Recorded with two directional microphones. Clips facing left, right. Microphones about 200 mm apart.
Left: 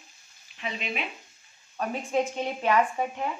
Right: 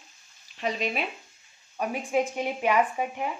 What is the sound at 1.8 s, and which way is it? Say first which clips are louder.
A woman's voice: right 1 dB; 15° right (ahead or behind).